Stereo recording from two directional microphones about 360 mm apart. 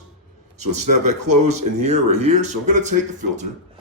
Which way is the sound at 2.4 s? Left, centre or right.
Centre.